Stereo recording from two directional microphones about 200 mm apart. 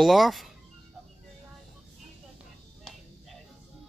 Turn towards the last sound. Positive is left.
turn(degrees=0)  # may be behind; listen again after turning